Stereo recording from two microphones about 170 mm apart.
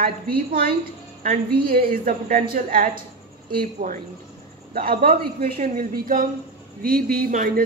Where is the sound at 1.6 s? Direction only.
55° right (ahead or behind).